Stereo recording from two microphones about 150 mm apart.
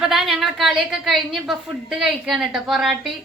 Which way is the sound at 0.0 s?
Centre (ahead or behind).